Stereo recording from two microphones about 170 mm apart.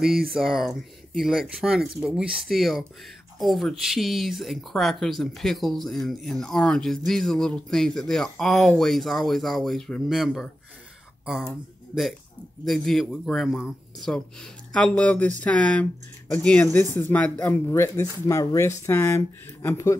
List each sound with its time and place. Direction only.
0.3 s speech: centre (ahead or behind)
12.6 s speech: centre (ahead or behind)